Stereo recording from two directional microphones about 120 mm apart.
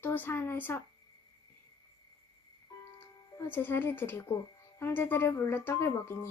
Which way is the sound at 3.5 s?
15° left (ahead or behind).